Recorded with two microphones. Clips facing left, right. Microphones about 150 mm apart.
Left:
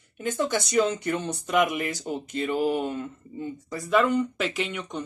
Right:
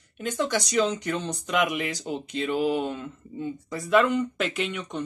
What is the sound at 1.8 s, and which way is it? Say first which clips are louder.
Speech: even; 45° left (ahead or behind).